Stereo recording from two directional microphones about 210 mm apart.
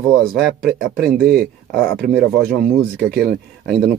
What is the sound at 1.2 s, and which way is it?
Speech, 45° right (ahead or behind).